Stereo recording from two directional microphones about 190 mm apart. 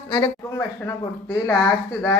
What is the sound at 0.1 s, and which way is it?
Speech, 15° left (ahead or behind).